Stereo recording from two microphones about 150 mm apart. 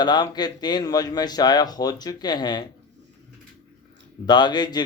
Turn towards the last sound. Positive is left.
turn(degrees=30)  # may be behind; listen again after turning